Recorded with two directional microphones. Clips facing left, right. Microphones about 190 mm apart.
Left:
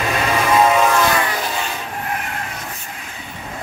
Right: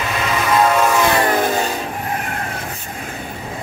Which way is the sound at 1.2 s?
50° right (ahead or behind).